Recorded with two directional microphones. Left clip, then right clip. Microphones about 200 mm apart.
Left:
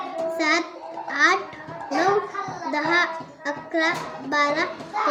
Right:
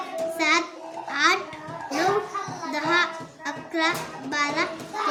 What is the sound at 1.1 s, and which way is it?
Babbling, 20° right (ahead or behind).